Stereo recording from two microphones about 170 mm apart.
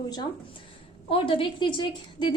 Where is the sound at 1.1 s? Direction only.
30° left (ahead or behind).